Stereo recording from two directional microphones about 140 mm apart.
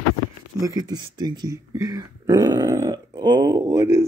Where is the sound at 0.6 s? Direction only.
25° right (ahead or behind).